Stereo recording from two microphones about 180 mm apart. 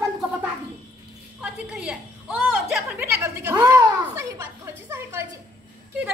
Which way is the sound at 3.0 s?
15° right (ahead or behind).